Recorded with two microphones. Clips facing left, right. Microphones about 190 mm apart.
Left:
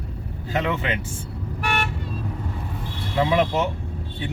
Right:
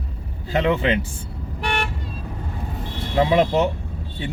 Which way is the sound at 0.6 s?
25° right (ahead or behind).